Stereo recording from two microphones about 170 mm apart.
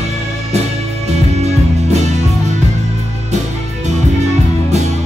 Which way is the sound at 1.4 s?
40° right (ahead or behind).